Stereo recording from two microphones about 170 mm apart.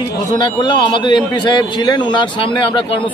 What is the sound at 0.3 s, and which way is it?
A man's voice, 25° left (ahead or behind).